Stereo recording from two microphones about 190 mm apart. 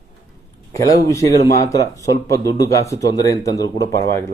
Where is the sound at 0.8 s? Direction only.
15° left (ahead or behind).